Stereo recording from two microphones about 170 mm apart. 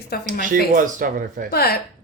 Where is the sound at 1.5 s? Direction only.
65° left (ahead or behind).